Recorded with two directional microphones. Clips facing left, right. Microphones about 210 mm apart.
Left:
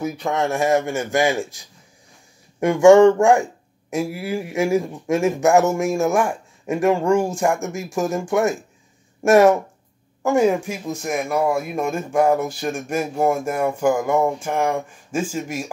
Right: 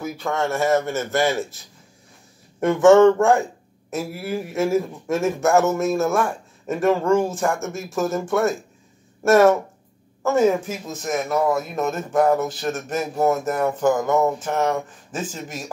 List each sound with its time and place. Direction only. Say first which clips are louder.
0.0 s speech: left 2 dB; 15° left (ahead or behind)